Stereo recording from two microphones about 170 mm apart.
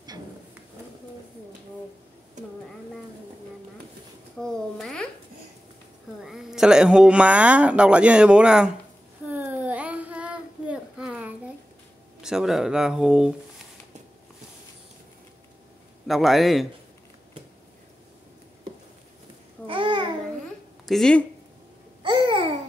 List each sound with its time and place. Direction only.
4.4 s babbling: 5° left (ahead or behind)
6.2 s speech: 5° right (ahead or behind)
9.3 s child singing: 10° right (ahead or behind)
12.2 s speech: 5° right (ahead or behind)
16.1 s speech: centre (ahead or behind)
19.6 s babbling: 30° right (ahead or behind)
20.8 s speech: centre (ahead or behind)
22.0 s babbling: 25° right (ahead or behind)